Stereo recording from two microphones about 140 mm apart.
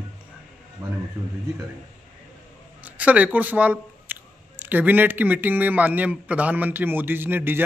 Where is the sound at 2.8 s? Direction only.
10° right (ahead or behind).